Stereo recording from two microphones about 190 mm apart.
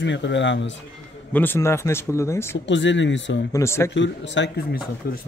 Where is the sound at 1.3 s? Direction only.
10° left (ahead or behind).